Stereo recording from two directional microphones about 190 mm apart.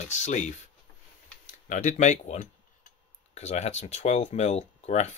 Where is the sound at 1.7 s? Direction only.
40° left (ahead or behind).